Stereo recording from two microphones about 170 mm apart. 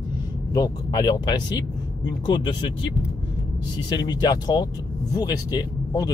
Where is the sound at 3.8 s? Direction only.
25° left (ahead or behind).